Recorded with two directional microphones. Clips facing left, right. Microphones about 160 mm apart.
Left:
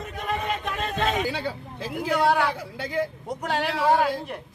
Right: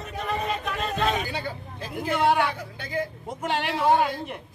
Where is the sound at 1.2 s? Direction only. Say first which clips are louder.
Left 3 dB; 90° left.